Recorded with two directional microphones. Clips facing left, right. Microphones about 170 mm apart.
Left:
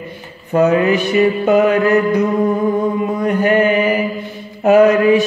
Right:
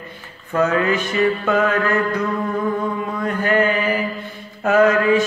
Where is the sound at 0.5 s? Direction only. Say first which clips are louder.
Left 5 dB; 20° left (ahead or behind).